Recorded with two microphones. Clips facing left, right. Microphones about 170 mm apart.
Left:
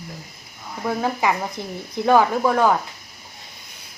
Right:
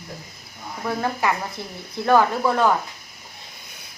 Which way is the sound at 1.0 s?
15° left (ahead or behind).